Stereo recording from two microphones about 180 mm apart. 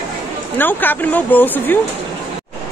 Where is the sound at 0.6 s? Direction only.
10° left (ahead or behind).